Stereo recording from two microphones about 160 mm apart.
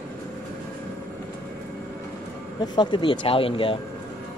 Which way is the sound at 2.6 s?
25° left (ahead or behind).